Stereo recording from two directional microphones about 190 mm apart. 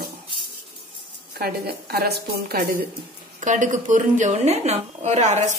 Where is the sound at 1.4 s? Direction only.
55° right (ahead or behind).